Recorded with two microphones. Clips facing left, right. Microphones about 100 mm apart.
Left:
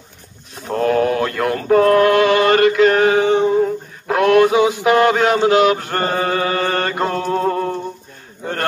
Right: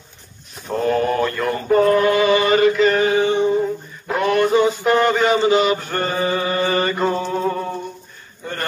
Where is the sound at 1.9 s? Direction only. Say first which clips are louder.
Left 3 dB; 70° left (ahead or behind).